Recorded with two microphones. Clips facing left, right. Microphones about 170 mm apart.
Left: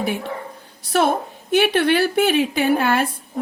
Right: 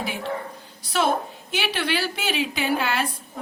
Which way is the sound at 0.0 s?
55° left (ahead or behind).